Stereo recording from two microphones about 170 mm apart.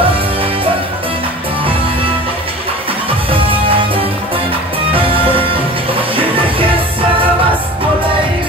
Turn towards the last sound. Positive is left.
turn(degrees=-30)  # may be behind; listen again after turning